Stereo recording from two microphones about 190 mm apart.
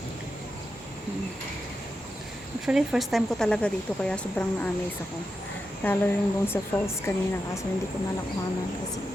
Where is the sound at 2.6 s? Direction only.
Centre (ahead or behind).